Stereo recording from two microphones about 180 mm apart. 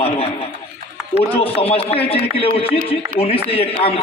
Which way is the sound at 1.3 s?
30° left (ahead or behind).